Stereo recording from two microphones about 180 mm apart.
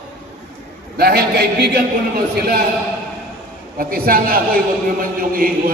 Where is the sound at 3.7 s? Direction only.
55° right (ahead or behind).